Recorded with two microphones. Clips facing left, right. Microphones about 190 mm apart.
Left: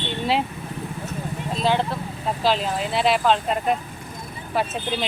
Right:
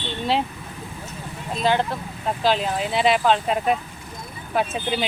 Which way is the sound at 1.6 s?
Centre (ahead or behind).